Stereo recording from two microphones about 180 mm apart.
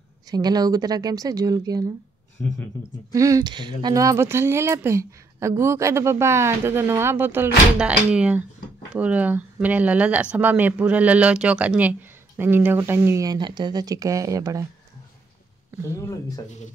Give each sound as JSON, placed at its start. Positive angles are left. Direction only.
{"t": 0.3, "sound": "speech", "side_deg": -20}
{"t": 2.4, "sound": "speech", "side_deg": 10}
{"t": 3.1, "sound": "speech", "side_deg": -20}
{"t": 16.0, "sound": "speech", "side_deg": 20}